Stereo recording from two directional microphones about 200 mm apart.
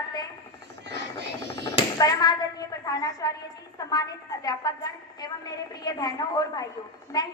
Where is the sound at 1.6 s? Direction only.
20° left (ahead or behind).